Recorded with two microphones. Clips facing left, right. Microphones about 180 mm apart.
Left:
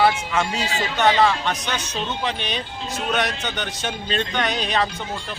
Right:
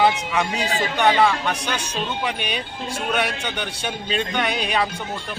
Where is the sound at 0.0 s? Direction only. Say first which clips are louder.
Even; 20° right (ahead or behind).